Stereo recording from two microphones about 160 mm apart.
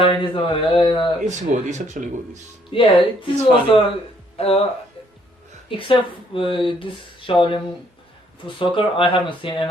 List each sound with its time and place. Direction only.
0.0 s speech: 35° left (ahead or behind)
1.2 s speech: 45° right (ahead or behind)
2.7 s speech: 35° left (ahead or behind)
5.6 s speech: 35° left (ahead or behind)